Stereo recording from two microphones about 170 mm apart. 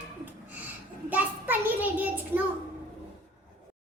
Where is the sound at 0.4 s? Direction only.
10° right (ahead or behind).